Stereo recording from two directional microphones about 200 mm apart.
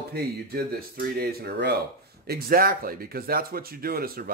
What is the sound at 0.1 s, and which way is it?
Speech, 50° right (ahead or behind).